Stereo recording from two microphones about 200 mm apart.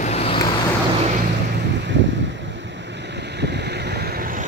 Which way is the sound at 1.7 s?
60° right (ahead or behind).